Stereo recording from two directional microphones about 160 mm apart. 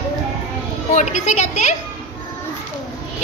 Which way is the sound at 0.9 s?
50° left (ahead or behind).